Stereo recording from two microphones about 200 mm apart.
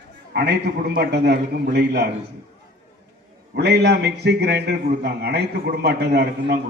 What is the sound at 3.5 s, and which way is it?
A man's voice, 55° right (ahead or behind).